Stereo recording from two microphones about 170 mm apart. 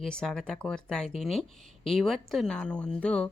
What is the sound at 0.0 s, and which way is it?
Speech, 5° left (ahead or behind).